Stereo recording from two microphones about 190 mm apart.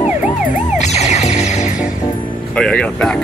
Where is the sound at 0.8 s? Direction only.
35° left (ahead or behind).